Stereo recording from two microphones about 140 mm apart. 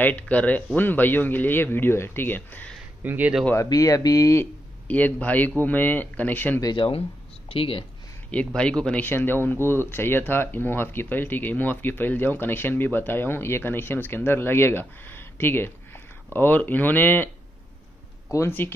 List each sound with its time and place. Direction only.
0.0 s speech: 10° left (ahead or behind)
3.0 s speech: 10° right (ahead or behind)
3.5 s speech: 25° left (ahead or behind)
4.8 s speech: 10° left (ahead or behind)
6.6 s speech: 35° left (ahead or behind)
8.5 s speech: 5° left (ahead or behind)
18.3 s speech: 15° left (ahead or behind)